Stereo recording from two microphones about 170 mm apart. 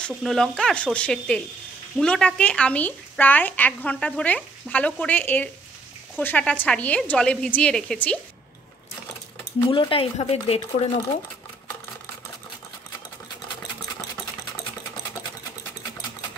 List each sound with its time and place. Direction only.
0.0 s speech: centre (ahead or behind)
9.7 s speech: 30° left (ahead or behind)